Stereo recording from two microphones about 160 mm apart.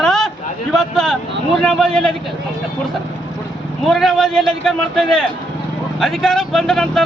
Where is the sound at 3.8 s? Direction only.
Centre (ahead or behind).